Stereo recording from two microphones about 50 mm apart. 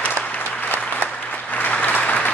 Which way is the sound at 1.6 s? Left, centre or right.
Left.